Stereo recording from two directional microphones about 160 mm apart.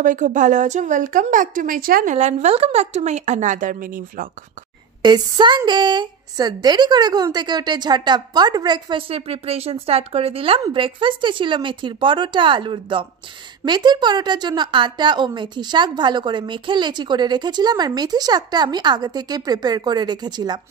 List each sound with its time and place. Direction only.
0.0 s a woman's voice: 50° right (ahead or behind)
2.1 s a woman's voice: 45° right (ahead or behind)
5.0 s a woman's voice: 30° right (ahead or behind)